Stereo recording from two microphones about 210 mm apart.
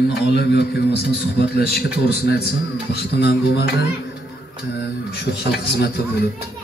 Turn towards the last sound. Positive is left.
turn(degrees=50)  # may be behind; listen again after turning